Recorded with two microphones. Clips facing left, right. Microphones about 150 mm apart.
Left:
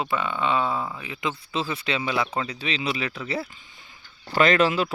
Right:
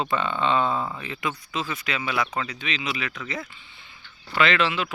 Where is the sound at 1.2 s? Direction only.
25° left (ahead or behind).